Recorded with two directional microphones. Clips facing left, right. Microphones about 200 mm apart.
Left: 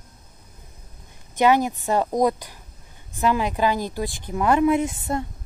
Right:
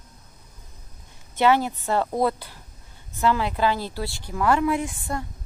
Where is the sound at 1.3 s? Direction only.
15° left (ahead or behind).